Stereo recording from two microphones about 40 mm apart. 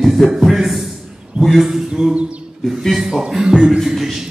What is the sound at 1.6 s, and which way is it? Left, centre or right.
Speech, centre.